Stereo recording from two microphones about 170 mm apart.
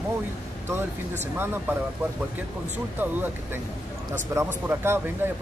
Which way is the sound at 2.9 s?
10° right (ahead or behind).